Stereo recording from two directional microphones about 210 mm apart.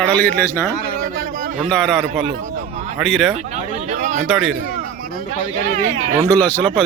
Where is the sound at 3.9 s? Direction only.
35° right (ahead or behind).